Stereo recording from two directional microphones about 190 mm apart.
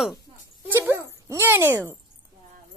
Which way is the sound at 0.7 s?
10° right (ahead or behind).